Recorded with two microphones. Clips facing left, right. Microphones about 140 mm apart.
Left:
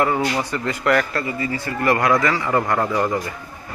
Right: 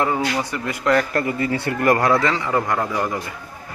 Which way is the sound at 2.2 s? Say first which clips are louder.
Left 1 dB; 20° right (ahead or behind).